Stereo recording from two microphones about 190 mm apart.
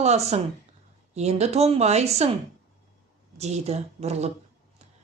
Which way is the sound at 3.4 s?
35° right (ahead or behind).